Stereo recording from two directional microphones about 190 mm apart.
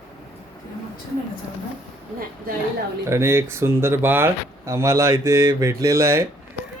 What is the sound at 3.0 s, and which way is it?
Speech, 15° right (ahead or behind).